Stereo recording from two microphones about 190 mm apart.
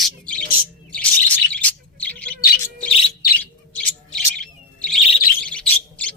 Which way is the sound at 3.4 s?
5° left (ahead or behind).